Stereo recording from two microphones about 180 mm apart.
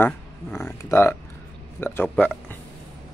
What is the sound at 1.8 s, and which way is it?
Speech, 10° left (ahead or behind).